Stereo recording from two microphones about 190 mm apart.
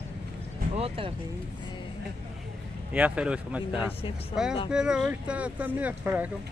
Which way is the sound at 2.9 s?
5° right (ahead or behind).